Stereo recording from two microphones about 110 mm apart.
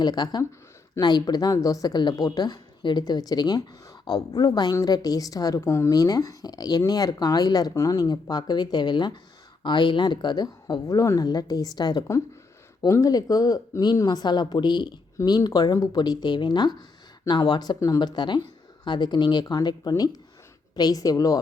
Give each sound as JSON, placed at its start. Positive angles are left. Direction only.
{"t": 0.0, "sound": "a woman's voice", "side_deg": 40}